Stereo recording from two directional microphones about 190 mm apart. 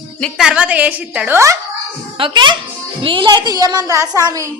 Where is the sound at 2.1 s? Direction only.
25° right (ahead or behind).